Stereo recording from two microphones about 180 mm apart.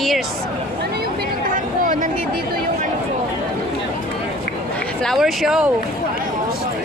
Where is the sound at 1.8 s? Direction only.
45° right (ahead or behind).